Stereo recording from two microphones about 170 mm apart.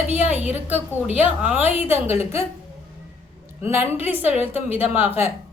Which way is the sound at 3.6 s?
10° right (ahead or behind).